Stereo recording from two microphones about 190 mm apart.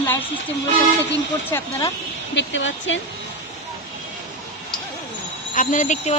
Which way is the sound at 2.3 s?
80° left.